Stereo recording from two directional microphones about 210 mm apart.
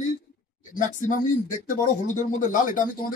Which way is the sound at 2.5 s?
40° left (ahead or behind).